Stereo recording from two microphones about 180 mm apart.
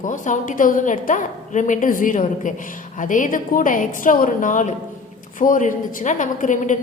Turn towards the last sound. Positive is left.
turn(degrees=45)  # may be behind; listen again after turning